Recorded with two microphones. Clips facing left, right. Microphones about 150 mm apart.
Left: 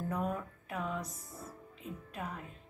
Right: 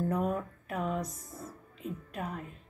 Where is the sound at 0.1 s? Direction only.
40° right (ahead or behind).